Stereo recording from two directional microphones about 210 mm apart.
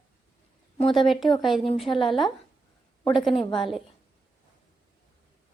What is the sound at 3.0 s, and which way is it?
Speech, 25° left (ahead or behind).